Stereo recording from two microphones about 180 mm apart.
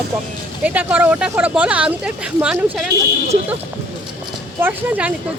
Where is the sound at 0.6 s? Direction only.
10° right (ahead or behind).